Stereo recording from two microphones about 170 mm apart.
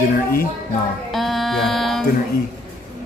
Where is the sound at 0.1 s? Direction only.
60° left (ahead or behind).